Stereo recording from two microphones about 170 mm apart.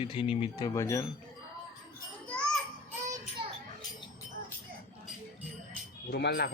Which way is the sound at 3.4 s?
30° right (ahead or behind).